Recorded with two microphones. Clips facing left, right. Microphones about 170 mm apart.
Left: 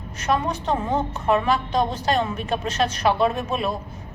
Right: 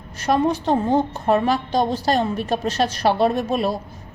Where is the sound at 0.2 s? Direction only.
35° right (ahead or behind).